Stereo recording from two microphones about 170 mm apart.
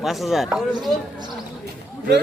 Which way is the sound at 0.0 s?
Centre (ahead or behind).